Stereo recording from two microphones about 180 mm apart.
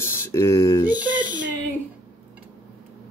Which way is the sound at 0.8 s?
10° right (ahead or behind).